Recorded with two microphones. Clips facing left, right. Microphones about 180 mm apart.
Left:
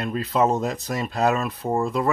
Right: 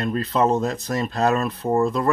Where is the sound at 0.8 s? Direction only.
10° left (ahead or behind).